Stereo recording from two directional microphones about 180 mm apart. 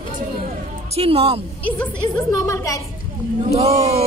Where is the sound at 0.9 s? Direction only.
30° right (ahead or behind).